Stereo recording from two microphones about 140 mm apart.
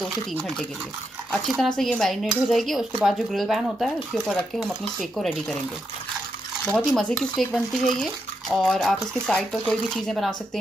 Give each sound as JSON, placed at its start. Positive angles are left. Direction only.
{"t": 1.3, "sound": "speech", "side_deg": 0}
{"t": 6.7, "sound": "speech", "side_deg": 5}